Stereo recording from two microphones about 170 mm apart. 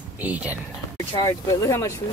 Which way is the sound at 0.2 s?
10° right (ahead or behind).